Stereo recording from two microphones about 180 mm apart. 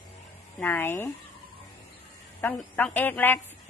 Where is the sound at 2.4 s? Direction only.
10° left (ahead or behind).